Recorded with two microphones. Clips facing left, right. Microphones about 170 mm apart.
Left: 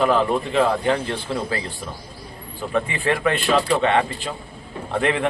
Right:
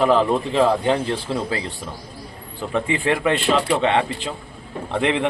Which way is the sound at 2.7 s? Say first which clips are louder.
Right 1 dB; 20° right (ahead or behind).